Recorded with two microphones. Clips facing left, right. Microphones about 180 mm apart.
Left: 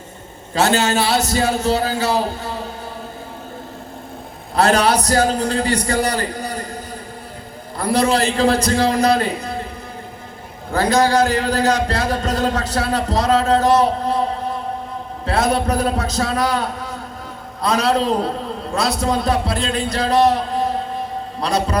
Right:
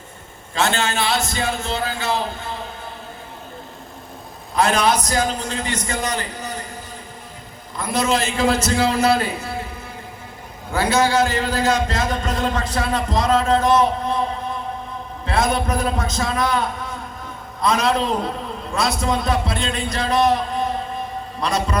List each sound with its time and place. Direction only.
0.5 s a man's voice: 40° left (ahead or behind)
4.5 s a man's voice: 35° left (ahead or behind)
7.8 s a man's voice: 35° left (ahead or behind)
10.7 s a man's voice: 40° left (ahead or behind)